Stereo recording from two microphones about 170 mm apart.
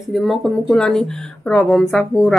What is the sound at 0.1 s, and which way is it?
Speech, centre (ahead or behind).